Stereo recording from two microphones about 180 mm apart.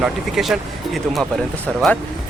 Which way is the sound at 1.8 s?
Centre (ahead or behind).